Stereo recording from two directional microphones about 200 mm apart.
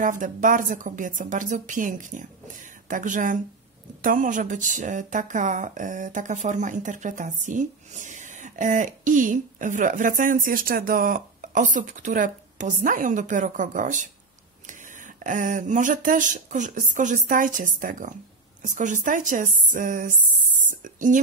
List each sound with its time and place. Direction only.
0.0 s speech: 40° right (ahead or behind)